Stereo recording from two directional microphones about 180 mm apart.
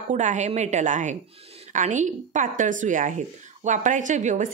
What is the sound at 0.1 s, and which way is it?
A woman's voice, 45° right (ahead or behind).